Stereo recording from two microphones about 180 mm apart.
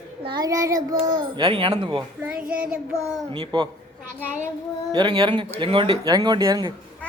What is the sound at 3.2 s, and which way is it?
Child singing, 30° right (ahead or behind).